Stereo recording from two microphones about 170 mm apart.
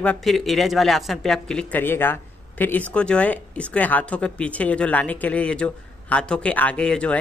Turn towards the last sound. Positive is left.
turn(degrees=5)  # may be behind; listen again after turning